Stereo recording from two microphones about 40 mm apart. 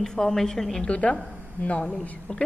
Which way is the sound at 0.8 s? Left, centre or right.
Left.